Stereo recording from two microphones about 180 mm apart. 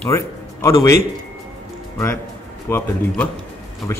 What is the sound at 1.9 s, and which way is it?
A man's voice, 15° left (ahead or behind).